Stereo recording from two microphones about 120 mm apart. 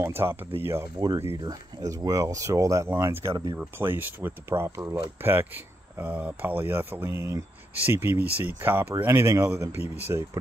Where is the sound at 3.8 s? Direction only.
15° right (ahead or behind).